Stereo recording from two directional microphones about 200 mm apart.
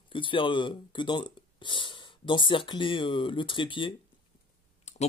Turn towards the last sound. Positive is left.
turn(degrees=35)  # may be behind; listen again after turning